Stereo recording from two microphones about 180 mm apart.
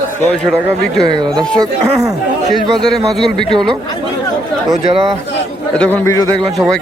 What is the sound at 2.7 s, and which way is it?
A man's voice, centre (ahead or behind).